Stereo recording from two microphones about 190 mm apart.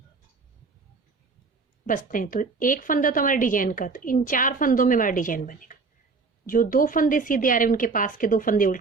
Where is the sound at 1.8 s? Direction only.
45° left (ahead or behind).